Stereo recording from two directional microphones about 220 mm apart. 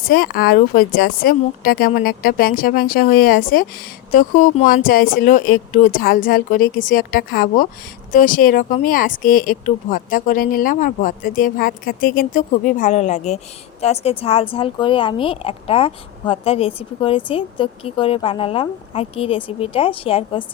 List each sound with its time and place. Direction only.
0.0 s speech: 45° left (ahead or behind); by 20.4 s 25° left (ahead or behind)